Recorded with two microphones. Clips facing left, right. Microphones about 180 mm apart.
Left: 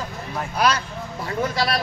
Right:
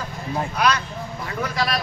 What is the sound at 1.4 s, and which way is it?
Speech, 30° left (ahead or behind).